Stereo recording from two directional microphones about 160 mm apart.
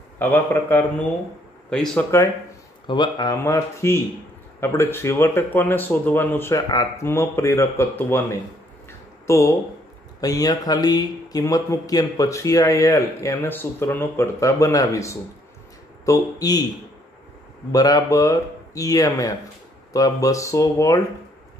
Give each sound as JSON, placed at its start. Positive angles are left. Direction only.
{"t": 0.2, "sound": "speech", "side_deg": 15}
{"t": 2.9, "sound": "speech", "side_deg": 25}
{"t": 17.6, "sound": "speech", "side_deg": 25}